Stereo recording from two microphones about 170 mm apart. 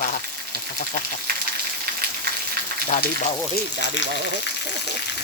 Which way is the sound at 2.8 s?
50° left (ahead or behind).